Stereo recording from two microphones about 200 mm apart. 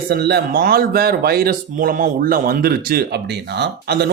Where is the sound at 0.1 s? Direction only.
50° right (ahead or behind).